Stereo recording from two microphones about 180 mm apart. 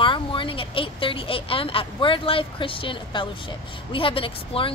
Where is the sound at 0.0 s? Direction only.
30° left (ahead or behind).